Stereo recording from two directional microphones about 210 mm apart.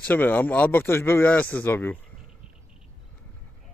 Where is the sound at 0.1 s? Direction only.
5° left (ahead or behind).